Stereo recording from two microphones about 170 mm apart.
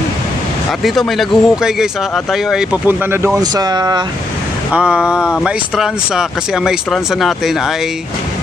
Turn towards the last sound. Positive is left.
turn(degrees=0)  # may be behind; listen again after turning